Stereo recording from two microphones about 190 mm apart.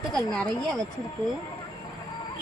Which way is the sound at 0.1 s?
5° left (ahead or behind).